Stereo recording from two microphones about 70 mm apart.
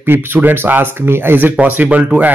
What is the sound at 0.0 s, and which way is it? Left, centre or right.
Speech, right.